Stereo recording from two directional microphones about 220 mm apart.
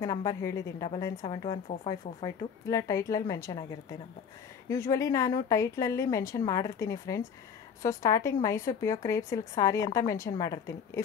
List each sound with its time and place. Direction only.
0.0 s speech: 15° left (ahead or behind)
4.6 s speech: 15° left (ahead or behind)